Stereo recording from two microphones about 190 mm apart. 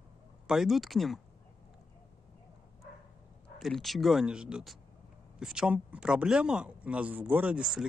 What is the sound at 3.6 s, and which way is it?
Speech, centre (ahead or behind).